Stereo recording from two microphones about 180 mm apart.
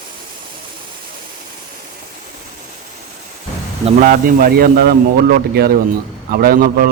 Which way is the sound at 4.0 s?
50° right (ahead or behind).